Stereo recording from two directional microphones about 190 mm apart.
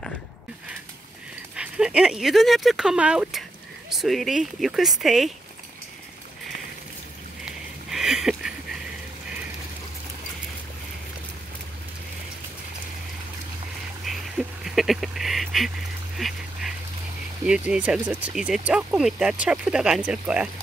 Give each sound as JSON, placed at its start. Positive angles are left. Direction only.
{"t": 1.6, "sound": "speech", "side_deg": -5}
{"t": 7.4, "sound": "a sound", "side_deg": -5}
{"t": 14.0, "sound": "goose", "side_deg": 0}
{"t": 16.2, "sound": "duck", "side_deg": 0}
{"t": 17.5, "sound": "speech", "side_deg": -5}